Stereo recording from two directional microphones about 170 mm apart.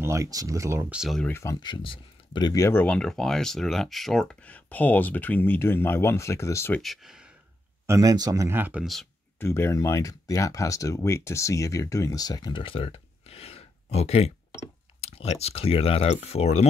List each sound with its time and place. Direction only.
0.0 s speech: 20° right (ahead or behind)
1.2 s speech: 15° left (ahead or behind)
6.8 s speech: centre (ahead or behind)
7.8 s speech: 20° right (ahead or behind)
9.4 s speech: 15° left (ahead or behind); by 16.6 s 40° left (ahead or behind)